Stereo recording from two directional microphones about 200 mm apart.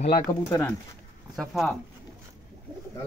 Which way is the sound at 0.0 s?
25° left (ahead or behind).